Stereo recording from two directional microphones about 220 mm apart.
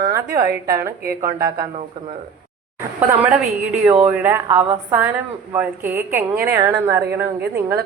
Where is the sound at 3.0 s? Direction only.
5° right (ahead or behind).